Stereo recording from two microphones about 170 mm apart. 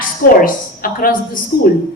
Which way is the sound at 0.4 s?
60° left (ahead or behind).